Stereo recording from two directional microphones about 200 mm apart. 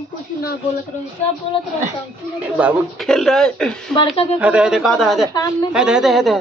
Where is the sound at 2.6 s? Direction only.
Centre (ahead or behind).